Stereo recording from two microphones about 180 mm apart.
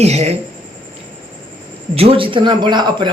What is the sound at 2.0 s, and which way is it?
A man's voice, 30° right (ahead or behind).